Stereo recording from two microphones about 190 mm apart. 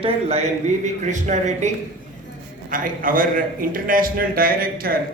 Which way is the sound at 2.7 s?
45° right (ahead or behind).